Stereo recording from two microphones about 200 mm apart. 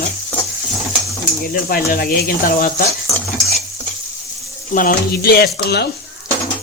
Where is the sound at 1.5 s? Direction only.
45° left (ahead or behind).